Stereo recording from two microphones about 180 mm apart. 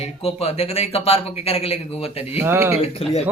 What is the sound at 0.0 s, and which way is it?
Speech, 35° left (ahead or behind).